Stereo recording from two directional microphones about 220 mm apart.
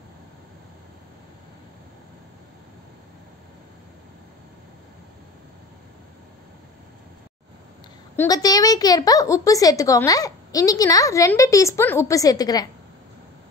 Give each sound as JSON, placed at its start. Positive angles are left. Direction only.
{"t": 8.2, "sound": "a woman's voice", "side_deg": 15}